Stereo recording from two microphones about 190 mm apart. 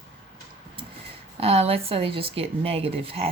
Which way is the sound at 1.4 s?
30° right (ahead or behind).